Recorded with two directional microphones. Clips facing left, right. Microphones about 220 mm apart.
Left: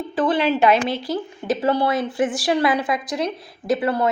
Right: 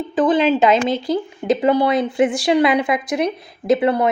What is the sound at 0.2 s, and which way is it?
A woman's voice, 20° right (ahead or behind).